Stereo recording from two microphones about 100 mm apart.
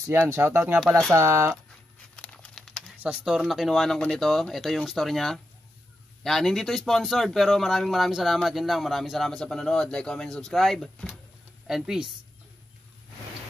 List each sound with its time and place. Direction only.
0.3 s speech: 25° right (ahead or behind)
2.1 s crumpling: 10° left (ahead or behind)
3.0 s speech: 10° right (ahead or behind)